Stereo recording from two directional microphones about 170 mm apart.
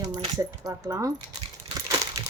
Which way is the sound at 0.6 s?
20° right (ahead or behind).